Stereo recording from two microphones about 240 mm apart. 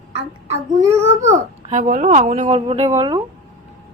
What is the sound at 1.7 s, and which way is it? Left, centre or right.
Speech, right.